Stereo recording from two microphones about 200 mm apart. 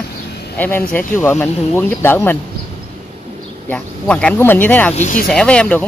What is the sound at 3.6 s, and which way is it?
Speech, 5° left (ahead or behind).